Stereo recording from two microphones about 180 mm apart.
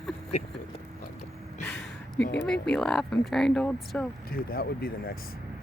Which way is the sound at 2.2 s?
70° left (ahead or behind).